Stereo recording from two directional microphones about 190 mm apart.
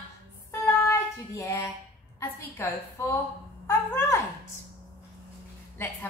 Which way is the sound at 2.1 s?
15° left (ahead or behind).